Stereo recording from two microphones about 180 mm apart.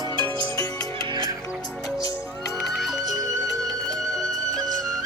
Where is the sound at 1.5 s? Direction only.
Centre (ahead or behind).